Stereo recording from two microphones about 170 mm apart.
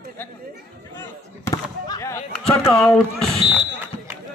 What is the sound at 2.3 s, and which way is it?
Speech, 5° left (ahead or behind).